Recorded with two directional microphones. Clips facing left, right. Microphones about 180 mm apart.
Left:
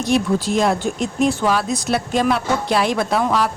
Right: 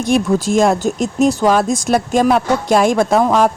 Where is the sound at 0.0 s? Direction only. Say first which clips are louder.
Right 3 dB; 50° right (ahead or behind).